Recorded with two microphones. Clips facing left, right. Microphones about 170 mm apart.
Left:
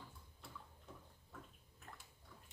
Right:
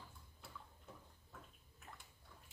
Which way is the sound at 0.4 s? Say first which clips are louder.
Left 1 dB; 5° right (ahead or behind).